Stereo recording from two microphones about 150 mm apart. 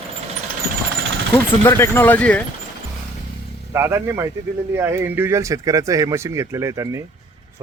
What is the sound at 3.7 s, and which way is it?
Speech, 15° right (ahead or behind).